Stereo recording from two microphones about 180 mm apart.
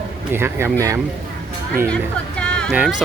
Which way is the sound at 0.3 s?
15° right (ahead or behind).